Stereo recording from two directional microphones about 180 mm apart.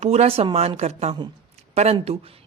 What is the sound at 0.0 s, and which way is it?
A woman's voice, 35° right (ahead or behind).